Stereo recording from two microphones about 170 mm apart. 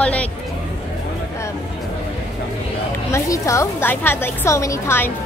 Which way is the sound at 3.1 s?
15° left (ahead or behind).